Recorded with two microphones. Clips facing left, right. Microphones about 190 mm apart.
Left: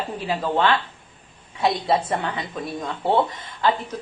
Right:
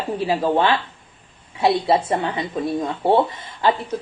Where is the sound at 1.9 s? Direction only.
10° right (ahead or behind).